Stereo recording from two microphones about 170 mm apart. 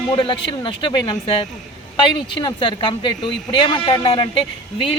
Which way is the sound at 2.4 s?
30° left (ahead or behind).